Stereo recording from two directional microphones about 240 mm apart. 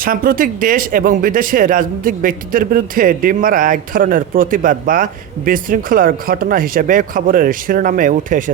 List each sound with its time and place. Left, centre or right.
0.0 s speech: right